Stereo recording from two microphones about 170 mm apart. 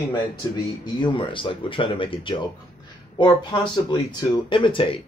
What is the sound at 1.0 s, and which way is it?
Speech, 30° left (ahead or behind).